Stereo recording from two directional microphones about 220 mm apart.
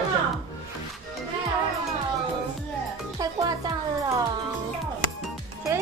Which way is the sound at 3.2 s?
15° right (ahead or behind).